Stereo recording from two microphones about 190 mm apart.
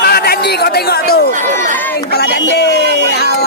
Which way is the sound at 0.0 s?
55° left (ahead or behind).